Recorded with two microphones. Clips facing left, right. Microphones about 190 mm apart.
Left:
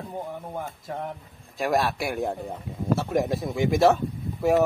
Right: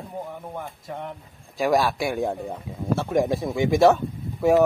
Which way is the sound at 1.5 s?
Centre (ahead or behind).